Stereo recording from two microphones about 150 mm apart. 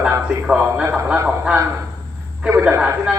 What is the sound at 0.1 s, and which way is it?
A man's voice, 10° right (ahead or behind).